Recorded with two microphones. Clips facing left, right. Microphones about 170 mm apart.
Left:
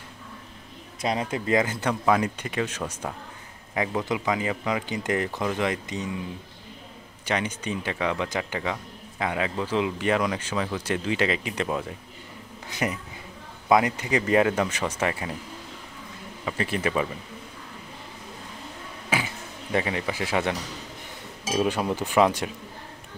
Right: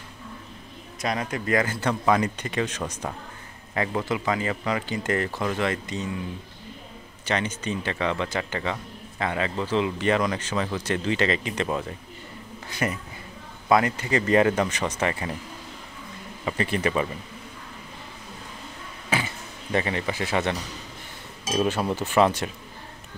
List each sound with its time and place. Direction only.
1.3 s speech: 20° left (ahead or behind)
2.0 s speech: 5° left (ahead or behind)
7.2 s speech: 10° left (ahead or behind)
12.6 s speech: 15° left (ahead or behind)
16.4 s speech: 5° left (ahead or behind)
19.0 s a sound: 10° left (ahead or behind)
21.5 s speech: 10° left (ahead or behind)